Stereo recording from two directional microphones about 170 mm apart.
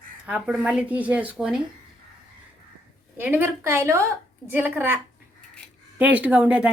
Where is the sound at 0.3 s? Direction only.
10° right (ahead or behind).